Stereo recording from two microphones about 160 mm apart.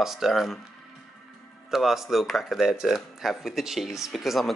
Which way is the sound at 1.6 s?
Centre (ahead or behind).